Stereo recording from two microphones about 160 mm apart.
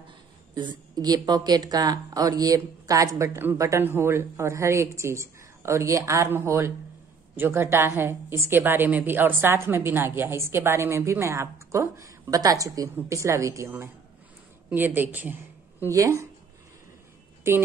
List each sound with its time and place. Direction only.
0.6 s a woman's voice: 25° right (ahead or behind)